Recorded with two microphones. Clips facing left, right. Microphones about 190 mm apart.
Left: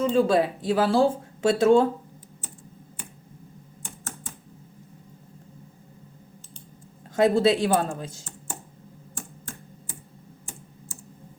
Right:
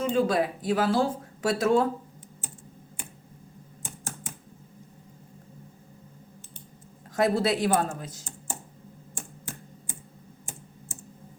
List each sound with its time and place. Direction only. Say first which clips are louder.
0.1 s speech: left 4 dB; 30° left (ahead or behind)
7.2 s speech: left 4 dB; 25° left (ahead or behind)